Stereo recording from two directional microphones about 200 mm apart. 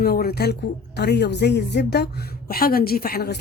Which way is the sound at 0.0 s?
50° left (ahead or behind).